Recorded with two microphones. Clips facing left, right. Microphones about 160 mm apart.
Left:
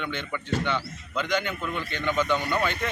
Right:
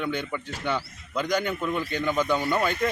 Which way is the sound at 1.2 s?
40° right (ahead or behind).